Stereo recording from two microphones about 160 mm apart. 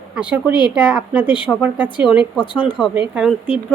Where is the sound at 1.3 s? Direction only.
30° left (ahead or behind).